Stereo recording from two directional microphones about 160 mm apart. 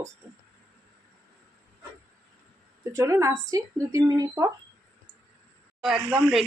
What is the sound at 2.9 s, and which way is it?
Speech, 20° right (ahead or behind).